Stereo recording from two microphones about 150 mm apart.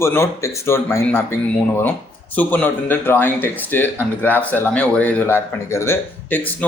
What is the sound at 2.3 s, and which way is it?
Speech, 10° left (ahead or behind).